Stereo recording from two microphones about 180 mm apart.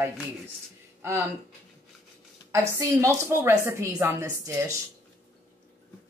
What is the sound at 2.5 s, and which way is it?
A woman's voice, 15° right (ahead or behind).